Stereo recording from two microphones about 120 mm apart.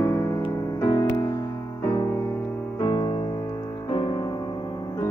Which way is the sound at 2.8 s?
30° left (ahead or behind).